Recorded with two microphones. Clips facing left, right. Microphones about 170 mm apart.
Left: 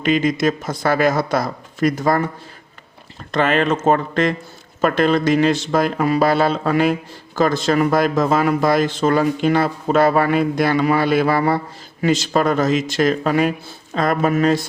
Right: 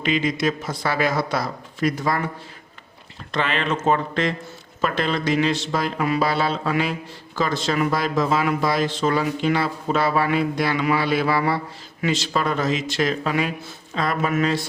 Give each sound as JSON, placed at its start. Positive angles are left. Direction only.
{"t": 0.0, "sound": "speech", "side_deg": 45}
{"t": 3.3, "sound": "speech", "side_deg": 45}